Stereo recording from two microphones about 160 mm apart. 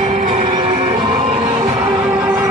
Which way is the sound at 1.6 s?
15° right (ahead or behind).